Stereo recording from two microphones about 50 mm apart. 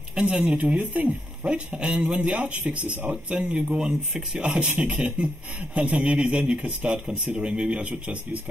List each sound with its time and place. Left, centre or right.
0.1 s speech: centre